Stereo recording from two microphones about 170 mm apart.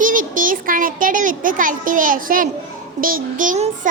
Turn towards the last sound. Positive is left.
turn(degrees=-50)  # may be behind; listen again after turning